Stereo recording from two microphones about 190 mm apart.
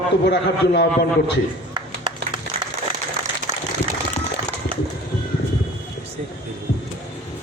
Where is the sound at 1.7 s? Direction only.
25° right (ahead or behind).